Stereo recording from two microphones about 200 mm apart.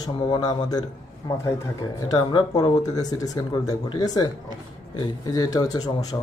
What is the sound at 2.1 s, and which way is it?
A man's voice, 20° left (ahead or behind).